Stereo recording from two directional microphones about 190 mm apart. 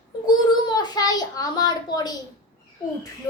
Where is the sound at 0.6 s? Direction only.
20° left (ahead or behind).